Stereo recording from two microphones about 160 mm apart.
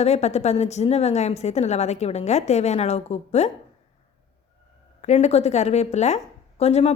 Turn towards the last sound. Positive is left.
turn(degrees=40)  # may be behind; listen again after turning